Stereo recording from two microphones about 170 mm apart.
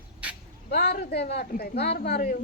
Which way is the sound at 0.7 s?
70° left (ahead or behind).